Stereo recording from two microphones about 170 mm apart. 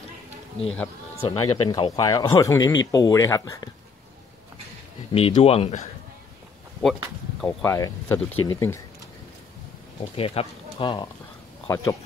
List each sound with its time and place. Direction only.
1.3 s speech: 25° left (ahead or behind)
5.1 s speech: 35° left (ahead or behind)
6.8 s speech: centre (ahead or behind)
7.6 s speech: 15° left (ahead or behind)
10.1 s speech: 35° left (ahead or behind)
11.6 s speech: 20° left (ahead or behind)